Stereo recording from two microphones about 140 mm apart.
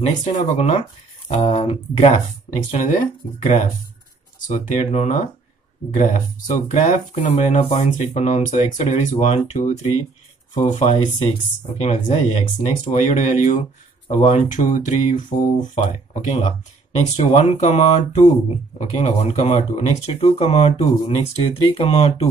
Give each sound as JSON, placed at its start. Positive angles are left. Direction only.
{"t": 0.0, "sound": "speech", "side_deg": 55}
{"t": 1.3, "sound": "speech", "side_deg": 40}
{"t": 15.7, "sound": "speech", "side_deg": 55}